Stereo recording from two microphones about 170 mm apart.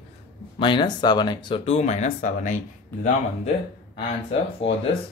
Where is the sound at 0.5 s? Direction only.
30° left (ahead or behind).